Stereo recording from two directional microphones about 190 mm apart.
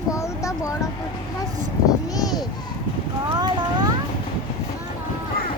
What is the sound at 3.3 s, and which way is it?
Boat, 20° right (ahead or behind).